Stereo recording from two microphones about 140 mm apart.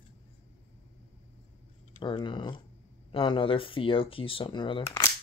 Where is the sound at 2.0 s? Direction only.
35° left (ahead or behind).